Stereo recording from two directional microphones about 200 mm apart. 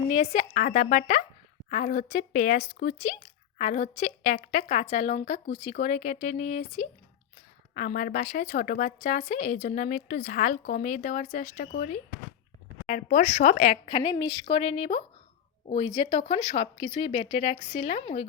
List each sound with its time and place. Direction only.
0.1 s a woman's voice: 35° left (ahead or behind)